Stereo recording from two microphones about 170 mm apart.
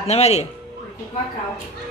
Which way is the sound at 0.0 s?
40° left (ahead or behind).